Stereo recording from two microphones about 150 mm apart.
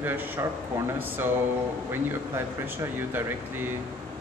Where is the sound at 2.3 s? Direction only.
15° right (ahead or behind).